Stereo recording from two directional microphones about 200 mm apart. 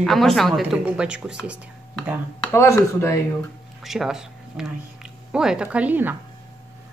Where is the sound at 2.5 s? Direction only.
15° left (ahead or behind).